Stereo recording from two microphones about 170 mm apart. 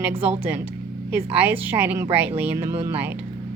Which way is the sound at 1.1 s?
10° right (ahead or behind).